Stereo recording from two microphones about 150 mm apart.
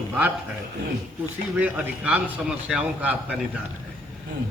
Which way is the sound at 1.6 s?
10° right (ahead or behind).